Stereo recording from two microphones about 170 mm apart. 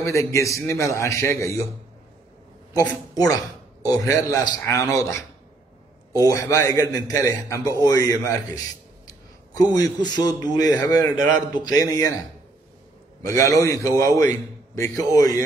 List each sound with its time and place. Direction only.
0.0 s a man's voice: 20° left (ahead or behind)
3.2 s a sound: 20° left (ahead or behind)
4.1 s a man's voice: 20° left (ahead or behind)
6.1 s a man's voice: 20° left (ahead or behind)
7.8 s a sound: 20° left (ahead or behind)
9.8 s a man's voice: 25° left (ahead or behind)
13.2 s a man's voice: 20° left (ahead or behind)